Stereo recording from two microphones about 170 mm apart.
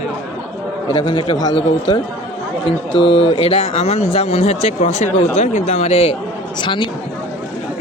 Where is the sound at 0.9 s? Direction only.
25° left (ahead or behind).